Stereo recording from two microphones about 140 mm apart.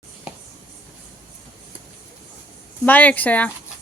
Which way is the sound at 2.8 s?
10° left (ahead or behind).